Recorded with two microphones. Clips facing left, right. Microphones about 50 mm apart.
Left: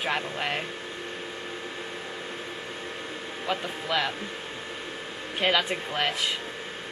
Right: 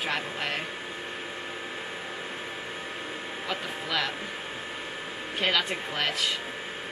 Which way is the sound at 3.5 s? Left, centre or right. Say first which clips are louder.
Left 3 dB; centre.